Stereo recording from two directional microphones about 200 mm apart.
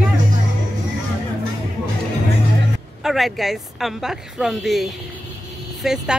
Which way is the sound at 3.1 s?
Centre (ahead or behind).